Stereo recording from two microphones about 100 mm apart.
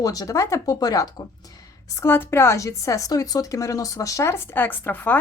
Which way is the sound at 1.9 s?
20° left (ahead or behind).